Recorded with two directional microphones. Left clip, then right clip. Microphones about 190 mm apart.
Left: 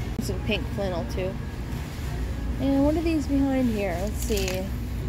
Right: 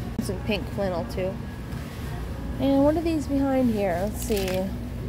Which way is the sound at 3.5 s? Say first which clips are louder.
Right 3 dB; 5° right (ahead or behind).